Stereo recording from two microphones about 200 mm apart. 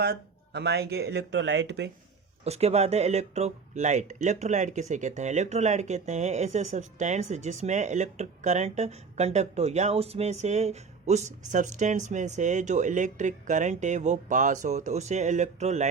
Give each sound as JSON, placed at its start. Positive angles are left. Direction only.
{"t": 0.0, "sound": "speech", "side_deg": -55}
{"t": 2.4, "sound": "speech", "side_deg": -30}